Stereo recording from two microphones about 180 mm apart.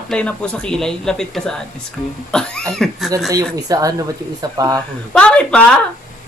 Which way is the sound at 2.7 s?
Centre (ahead or behind).